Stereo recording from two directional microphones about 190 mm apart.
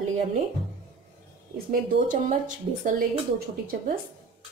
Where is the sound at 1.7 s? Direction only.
45° right (ahead or behind).